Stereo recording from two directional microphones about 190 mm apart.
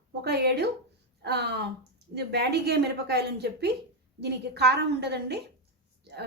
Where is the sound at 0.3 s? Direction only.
60° right (ahead or behind).